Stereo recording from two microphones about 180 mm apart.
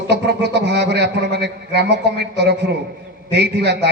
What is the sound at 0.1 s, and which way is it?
Speech, 70° right (ahead or behind).